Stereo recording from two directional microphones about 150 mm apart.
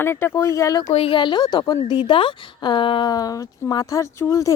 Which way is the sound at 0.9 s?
35° left (ahead or behind).